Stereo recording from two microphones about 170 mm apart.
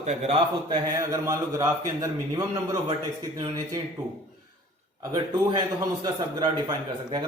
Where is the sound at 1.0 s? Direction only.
20° right (ahead or behind).